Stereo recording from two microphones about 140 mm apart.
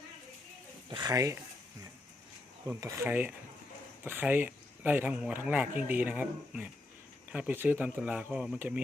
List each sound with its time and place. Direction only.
0.9 s speech: 30° right (ahead or behind)
2.6 s speech: 15° right (ahead or behind)